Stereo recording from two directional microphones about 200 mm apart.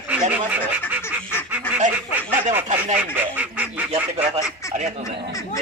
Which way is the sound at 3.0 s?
10° right (ahead or behind).